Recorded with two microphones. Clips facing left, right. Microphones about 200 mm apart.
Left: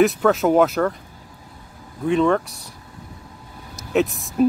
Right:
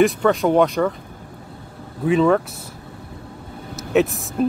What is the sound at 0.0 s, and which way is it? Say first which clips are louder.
Speech: even; 5° left (ahead or behind).